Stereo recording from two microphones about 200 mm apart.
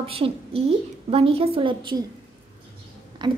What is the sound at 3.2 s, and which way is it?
Speech, 20° right (ahead or behind).